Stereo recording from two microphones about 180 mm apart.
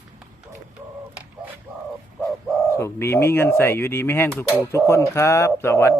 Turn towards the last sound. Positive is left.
turn(degrees=15)  # may be behind; listen again after turning